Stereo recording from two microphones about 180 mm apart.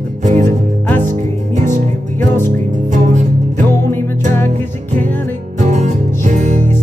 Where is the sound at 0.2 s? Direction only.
40° right (ahead or behind).